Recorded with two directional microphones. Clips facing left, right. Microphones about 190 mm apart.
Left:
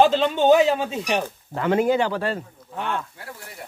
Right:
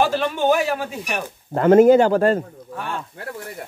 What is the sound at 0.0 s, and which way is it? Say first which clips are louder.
A man's voice: left 2 dB; 20° left (ahead or behind).